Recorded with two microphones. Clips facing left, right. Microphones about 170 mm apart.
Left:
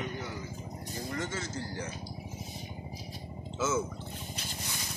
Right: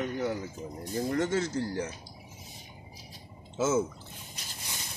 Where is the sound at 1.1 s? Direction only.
65° right (ahead or behind).